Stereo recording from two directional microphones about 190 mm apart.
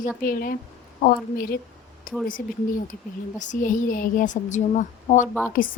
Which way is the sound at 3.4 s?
45° left (ahead or behind).